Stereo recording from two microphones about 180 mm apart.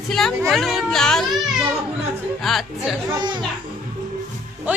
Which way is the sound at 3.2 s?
25° right (ahead or behind).